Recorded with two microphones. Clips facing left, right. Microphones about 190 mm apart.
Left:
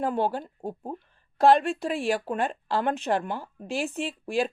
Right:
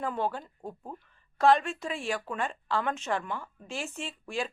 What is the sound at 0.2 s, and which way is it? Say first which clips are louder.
Speech: left 5 dB; 35° left (ahead or behind).